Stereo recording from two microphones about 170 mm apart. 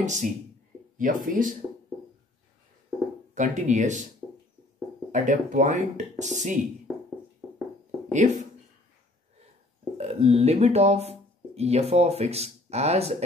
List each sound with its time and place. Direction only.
0.0 s speech: 45° right (ahead or behind)
3.3 s speech: 45° right (ahead or behind)
4.2 s music: 5° left (ahead or behind)
5.1 s speech: 50° right (ahead or behind)
8.1 s speech: 45° right (ahead or behind)
9.9 s speech: 40° right (ahead or behind)